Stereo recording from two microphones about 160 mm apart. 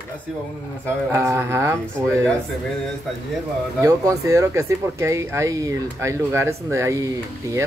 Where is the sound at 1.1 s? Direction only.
15° right (ahead or behind).